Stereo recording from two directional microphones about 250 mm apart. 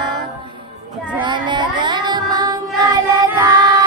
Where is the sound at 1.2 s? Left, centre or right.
Centre.